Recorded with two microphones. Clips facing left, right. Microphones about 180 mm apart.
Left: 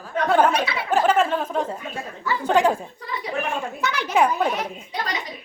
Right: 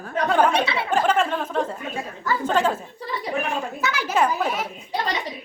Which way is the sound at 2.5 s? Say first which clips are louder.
Left 4 dB; 10° left (ahead or behind).